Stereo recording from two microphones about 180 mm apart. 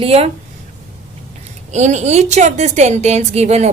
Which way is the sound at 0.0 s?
35° right (ahead or behind).